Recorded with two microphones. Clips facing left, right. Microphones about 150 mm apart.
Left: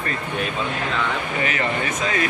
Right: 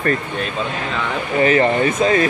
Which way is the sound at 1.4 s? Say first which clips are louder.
Right 12 dB; 35° right (ahead or behind).